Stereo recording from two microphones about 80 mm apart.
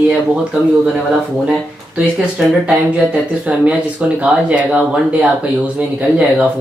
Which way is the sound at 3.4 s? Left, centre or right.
Centre.